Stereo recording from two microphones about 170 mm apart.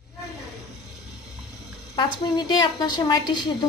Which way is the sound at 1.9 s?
25° left (ahead or behind).